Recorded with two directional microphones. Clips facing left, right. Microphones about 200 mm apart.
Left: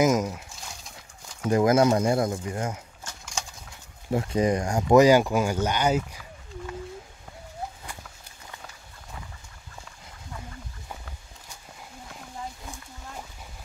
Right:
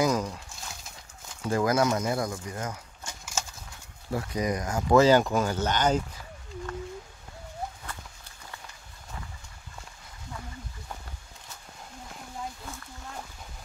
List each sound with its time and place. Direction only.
0.0 s speech: 20° left (ahead or behind)
1.5 s speech: 25° left (ahead or behind)
3.1 s a sound: 5° right (ahead or behind)
4.1 s speech: 25° left (ahead or behind); by 6.0 s 10° left (ahead or behind)